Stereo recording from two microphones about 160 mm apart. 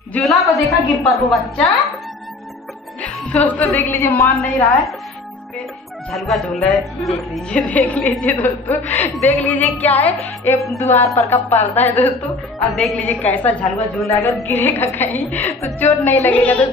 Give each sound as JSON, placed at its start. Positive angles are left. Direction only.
{"t": 0.1, "sound": "a woman's voice", "side_deg": 0}
{"t": 3.0, "sound": "a woman's voice", "side_deg": 10}
{"t": 6.1, "sound": "a woman's voice", "side_deg": 0}
{"t": 8.9, "sound": "a woman's voice", "side_deg": 45}
{"t": 9.4, "sound": "a woman's voice", "side_deg": 10}